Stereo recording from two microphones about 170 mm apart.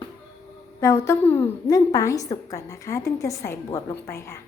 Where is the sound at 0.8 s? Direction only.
15° left (ahead or behind).